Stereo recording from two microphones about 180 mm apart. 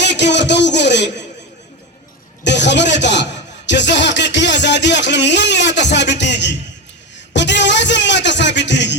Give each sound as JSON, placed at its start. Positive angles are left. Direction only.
{"t": 0.0, "sound": "a man's voice", "side_deg": 75}
{"t": 2.4, "sound": "a man's voice", "side_deg": 75}